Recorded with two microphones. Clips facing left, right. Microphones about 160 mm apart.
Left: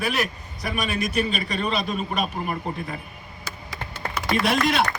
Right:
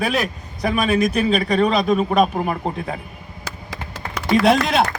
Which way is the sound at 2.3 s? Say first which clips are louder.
Right 6 dB; 90° right.